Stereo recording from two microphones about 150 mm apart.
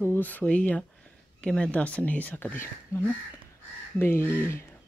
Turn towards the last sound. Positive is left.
turn(degrees=15)  # may be behind; listen again after turning